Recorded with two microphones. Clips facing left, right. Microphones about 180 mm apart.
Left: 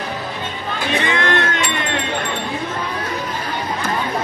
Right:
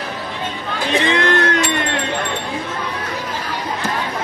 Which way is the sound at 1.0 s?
35° right (ahead or behind).